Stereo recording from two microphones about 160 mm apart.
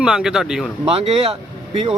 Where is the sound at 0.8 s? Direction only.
40° right (ahead or behind).